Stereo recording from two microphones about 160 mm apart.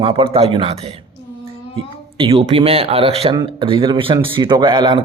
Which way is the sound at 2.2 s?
35° right (ahead or behind).